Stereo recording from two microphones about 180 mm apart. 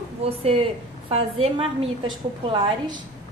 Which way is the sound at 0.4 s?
30° right (ahead or behind).